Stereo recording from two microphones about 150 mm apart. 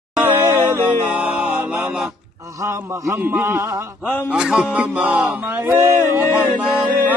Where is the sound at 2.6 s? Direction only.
20° right (ahead or behind).